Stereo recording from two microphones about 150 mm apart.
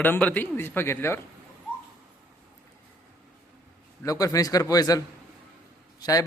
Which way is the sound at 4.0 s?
20° left (ahead or behind).